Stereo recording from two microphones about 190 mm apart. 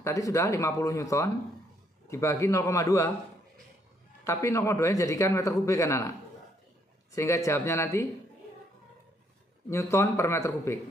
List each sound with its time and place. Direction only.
0.0 s speech: 15° left (ahead or behind)
4.3 s speech: 15° left (ahead or behind)
7.2 s speech: 15° left (ahead or behind)
9.7 s speech: 15° left (ahead or behind)